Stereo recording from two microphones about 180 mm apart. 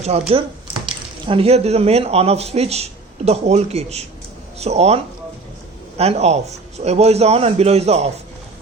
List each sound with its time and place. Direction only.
0.0 s speech: 35° right (ahead or behind)
6.0 s a man's voice: 35° right (ahead or behind)